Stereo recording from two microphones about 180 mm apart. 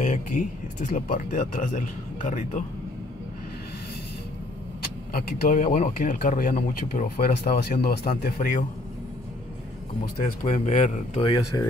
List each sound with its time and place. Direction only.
0.0 s a man's voice: 45° left (ahead or behind)
5.1 s a man's voice: 50° left (ahead or behind)
10.4 s speech: 40° left (ahead or behind)
11.1 s speech: 25° left (ahead or behind)